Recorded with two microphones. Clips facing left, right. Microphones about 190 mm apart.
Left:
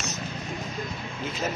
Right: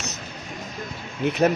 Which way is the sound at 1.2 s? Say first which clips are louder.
Right 11 dB; 65° right (ahead or behind).